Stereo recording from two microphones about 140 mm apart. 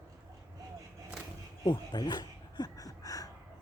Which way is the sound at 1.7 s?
30° left (ahead or behind).